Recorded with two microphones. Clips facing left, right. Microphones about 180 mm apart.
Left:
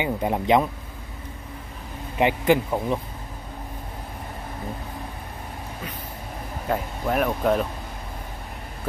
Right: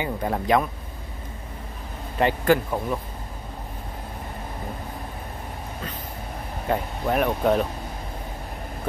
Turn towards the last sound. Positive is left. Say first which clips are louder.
# right 1 dB
turn(degrees=0)  # may be behind; listen again after turning